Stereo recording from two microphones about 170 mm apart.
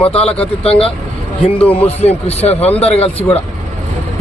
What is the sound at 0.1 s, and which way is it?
Speech, 35° left (ahead or behind).